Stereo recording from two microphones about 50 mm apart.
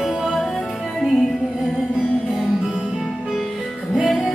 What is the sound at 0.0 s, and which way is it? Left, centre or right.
Music, centre.